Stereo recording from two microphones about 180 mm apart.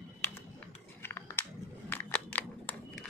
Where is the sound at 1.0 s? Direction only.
15° left (ahead or behind).